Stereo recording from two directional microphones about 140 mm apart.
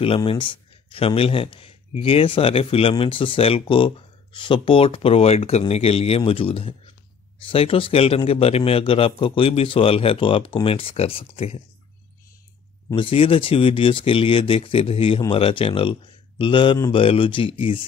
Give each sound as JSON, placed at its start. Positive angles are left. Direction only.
{"t": 0.0, "sound": "speech", "side_deg": 40}
{"t": 12.9, "sound": "speech", "side_deg": 40}